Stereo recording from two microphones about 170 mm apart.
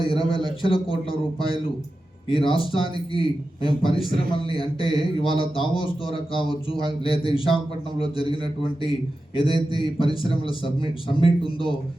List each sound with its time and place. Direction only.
0.0 s speech: 30° left (ahead or behind)
2.3 s speech: 30° left (ahead or behind)